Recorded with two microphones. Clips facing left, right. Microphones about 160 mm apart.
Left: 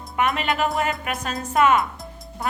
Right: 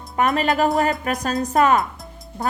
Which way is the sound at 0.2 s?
40° right (ahead or behind).